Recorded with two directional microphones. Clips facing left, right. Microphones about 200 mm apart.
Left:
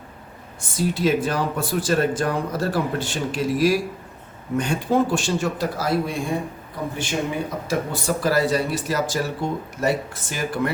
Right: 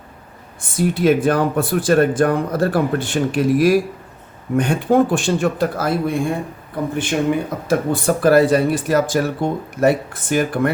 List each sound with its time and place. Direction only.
0.8 s speech: 55° right (ahead or behind)